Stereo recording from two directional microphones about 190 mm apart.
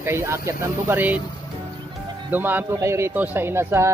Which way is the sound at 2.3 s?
10° right (ahead or behind).